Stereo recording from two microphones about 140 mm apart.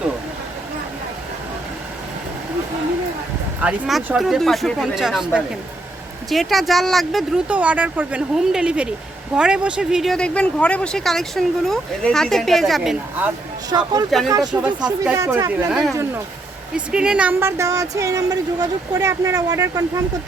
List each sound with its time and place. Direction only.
3.6 s speech: 5° right (ahead or behind)
6.3 s speech: centre (ahead or behind)
13.7 s speech: 30° right (ahead or behind)
14.5 s speech: 10° right (ahead or behind)
17.6 s speech: 25° right (ahead or behind)